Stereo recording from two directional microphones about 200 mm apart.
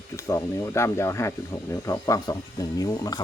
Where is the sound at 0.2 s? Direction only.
15° left (ahead or behind).